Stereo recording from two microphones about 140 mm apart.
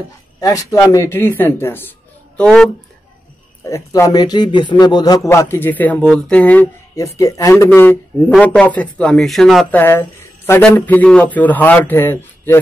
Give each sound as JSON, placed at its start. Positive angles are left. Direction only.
{"t": 0.4, "sound": "a man's voice", "side_deg": 25}
{"t": 3.6, "sound": "a man's voice", "side_deg": 20}
{"t": 7.0, "sound": "a man's voice", "side_deg": 25}
{"t": 9.7, "sound": "a man's voice", "side_deg": 15}